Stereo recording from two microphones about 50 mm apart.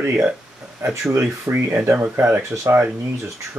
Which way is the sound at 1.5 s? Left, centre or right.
Right.